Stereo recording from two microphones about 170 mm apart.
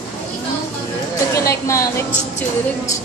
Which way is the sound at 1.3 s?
15° left (ahead or behind).